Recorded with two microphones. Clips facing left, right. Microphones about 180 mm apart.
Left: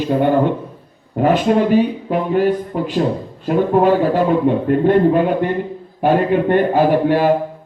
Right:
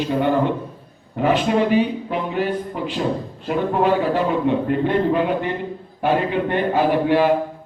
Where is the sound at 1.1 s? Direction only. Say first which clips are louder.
Left 4 dB; 45° left (ahead or behind).